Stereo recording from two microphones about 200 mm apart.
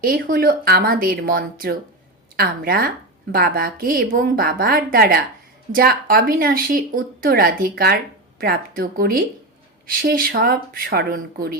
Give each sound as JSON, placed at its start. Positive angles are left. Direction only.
{"t": 0.0, "sound": "speech", "side_deg": -45}